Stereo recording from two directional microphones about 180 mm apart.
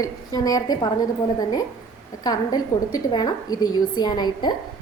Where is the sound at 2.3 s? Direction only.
20° left (ahead or behind).